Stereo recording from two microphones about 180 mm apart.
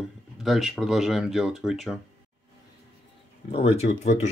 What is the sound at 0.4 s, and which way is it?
Speech, centre (ahead or behind).